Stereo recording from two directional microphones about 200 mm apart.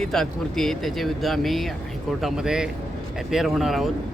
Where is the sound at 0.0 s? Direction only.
Centre (ahead or behind).